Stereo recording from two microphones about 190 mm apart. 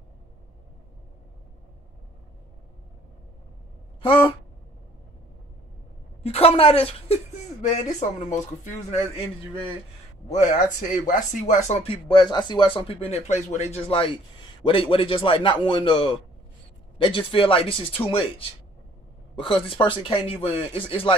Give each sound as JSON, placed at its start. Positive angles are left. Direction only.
{"t": 4.0, "sound": "a sound", "side_deg": 25}
{"t": 6.2, "sound": "a woman's voice", "side_deg": 30}
{"t": 10.2, "sound": "speech", "side_deg": 40}
{"t": 19.3, "sound": "speech", "side_deg": 25}